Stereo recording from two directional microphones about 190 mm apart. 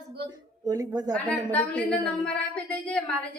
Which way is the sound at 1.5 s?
10° left (ahead or behind).